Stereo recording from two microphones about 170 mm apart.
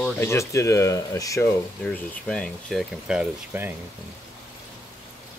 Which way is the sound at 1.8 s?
5° left (ahead or behind).